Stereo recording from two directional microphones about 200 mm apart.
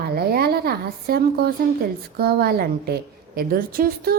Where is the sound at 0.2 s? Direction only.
50° right (ahead or behind).